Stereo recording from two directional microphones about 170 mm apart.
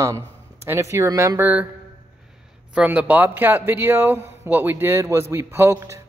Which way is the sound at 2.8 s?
10° right (ahead or behind).